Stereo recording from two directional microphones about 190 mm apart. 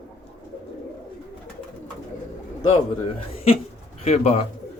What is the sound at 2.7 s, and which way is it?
Speech, 30° left (ahead or behind).